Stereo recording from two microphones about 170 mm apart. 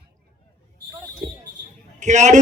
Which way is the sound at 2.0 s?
45° right (ahead or behind).